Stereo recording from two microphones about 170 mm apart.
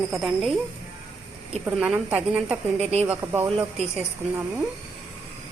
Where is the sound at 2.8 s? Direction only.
40° right (ahead or behind).